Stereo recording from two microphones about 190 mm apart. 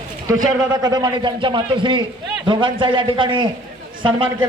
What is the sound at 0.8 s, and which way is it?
Speech, 20° right (ahead or behind).